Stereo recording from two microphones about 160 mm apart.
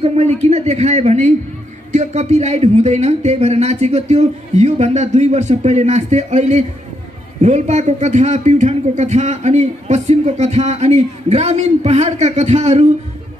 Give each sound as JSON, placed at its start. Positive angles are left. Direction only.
{"t": 0.0, "sound": "a man's voice", "side_deg": -40}